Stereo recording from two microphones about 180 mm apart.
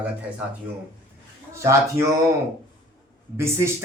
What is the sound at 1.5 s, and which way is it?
Speech, 15° right (ahead or behind).